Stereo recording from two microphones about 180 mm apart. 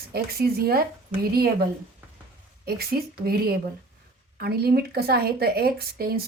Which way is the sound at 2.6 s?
60° right (ahead or behind).